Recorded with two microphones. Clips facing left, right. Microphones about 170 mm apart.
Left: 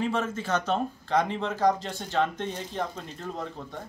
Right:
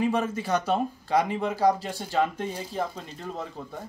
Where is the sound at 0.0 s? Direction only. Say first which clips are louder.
Right 3 dB; 15° right (ahead or behind).